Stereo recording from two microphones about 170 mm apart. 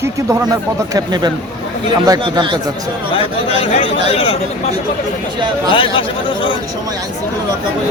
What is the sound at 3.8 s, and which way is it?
Speech, 35° left (ahead or behind).